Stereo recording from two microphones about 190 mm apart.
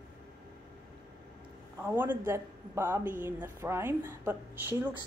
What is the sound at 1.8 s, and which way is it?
A woman's voice, 10° right (ahead or behind).